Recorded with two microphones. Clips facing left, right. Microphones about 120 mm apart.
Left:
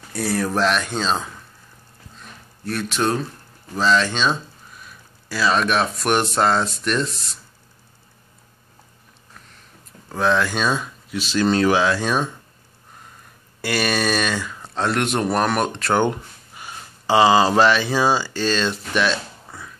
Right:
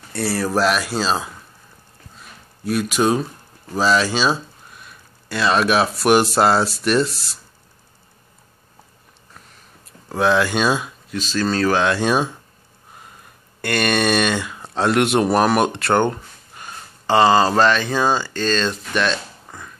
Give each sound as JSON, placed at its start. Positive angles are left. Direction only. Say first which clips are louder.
{"t": 0.1, "sound": "speech", "louder": "right 1 dB", "side_deg": 0}
{"t": 2.1, "sound": "a sound", "louder": "left 1 dB", "side_deg": -10}
{"t": 3.7, "sound": "speech", "louder": "right 1 dB", "side_deg": -10}
{"t": 10.0, "sound": "speech", "louder": "right 2 dB", "side_deg": -5}
{"t": 11.1, "sound": "speech", "louder": "left 2 dB", "side_deg": 15}
{"t": 11.8, "sound": "speech", "louder": "right 2 dB", "side_deg": 0}
{"t": 13.6, "sound": "speech", "louder": "right 2 dB", "side_deg": 5}
{"t": 16.0, "sound": "speech", "louder": "right 1 dB", "side_deg": 10}